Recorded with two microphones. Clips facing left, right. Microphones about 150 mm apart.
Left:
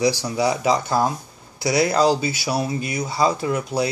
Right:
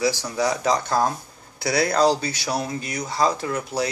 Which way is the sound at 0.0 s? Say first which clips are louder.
Left 3 dB; 10° left (ahead or behind).